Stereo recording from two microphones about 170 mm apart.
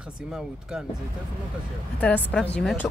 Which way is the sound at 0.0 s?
5° right (ahead or behind).